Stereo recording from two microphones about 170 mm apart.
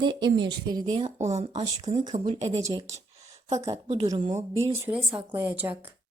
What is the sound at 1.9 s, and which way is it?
Speech, 30° right (ahead or behind).